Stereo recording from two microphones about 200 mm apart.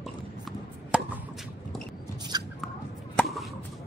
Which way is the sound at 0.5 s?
5° right (ahead or behind).